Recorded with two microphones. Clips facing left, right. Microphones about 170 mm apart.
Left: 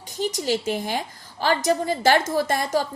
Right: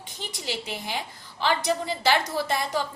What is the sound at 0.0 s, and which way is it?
A woman's voice, 40° left (ahead or behind).